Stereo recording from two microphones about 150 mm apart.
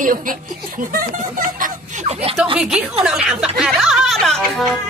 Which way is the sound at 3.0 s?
5° right (ahead or behind).